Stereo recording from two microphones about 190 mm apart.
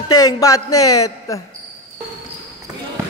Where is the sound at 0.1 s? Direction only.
20° left (ahead or behind).